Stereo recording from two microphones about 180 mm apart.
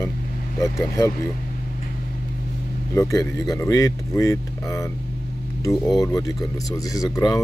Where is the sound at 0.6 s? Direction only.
15° left (ahead or behind).